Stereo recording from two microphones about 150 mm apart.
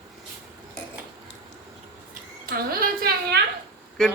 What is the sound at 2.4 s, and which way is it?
Speech, 75° right (ahead or behind).